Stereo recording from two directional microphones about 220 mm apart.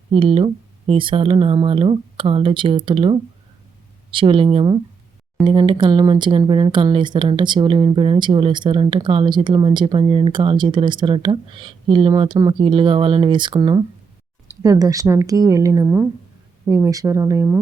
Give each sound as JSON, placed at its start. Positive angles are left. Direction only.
{"t": 0.1, "sound": "speech", "side_deg": -25}